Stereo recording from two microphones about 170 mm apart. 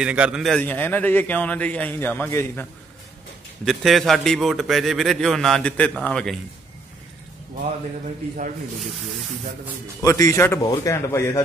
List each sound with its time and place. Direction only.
0.0 s a man's voice: 5° right (ahead or behind); by 2.6 s 15° left (ahead or behind)
3.6 s a man's voice: centre (ahead or behind)
10.0 s a man's voice: 20° left (ahead or behind)